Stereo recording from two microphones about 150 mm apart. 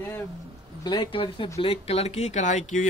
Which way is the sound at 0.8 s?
30° left (ahead or behind).